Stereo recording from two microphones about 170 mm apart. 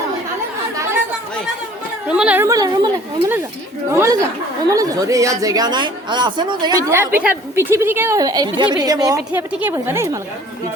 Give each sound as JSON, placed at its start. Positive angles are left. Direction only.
{"t": 2.0, "sound": "speech", "side_deg": -5}
{"t": 9.5, "sound": "a woman's voice", "side_deg": -10}